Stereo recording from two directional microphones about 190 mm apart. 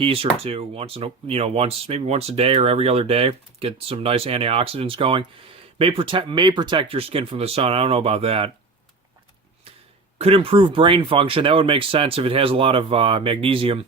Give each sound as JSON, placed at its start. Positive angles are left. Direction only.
{"t": 0.0, "sound": "speech", "side_deg": -30}
{"t": 10.2, "sound": "speech", "side_deg": -30}